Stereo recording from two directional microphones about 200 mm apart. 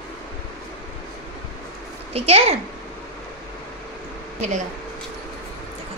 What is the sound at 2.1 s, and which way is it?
Speech, 30° right (ahead or behind).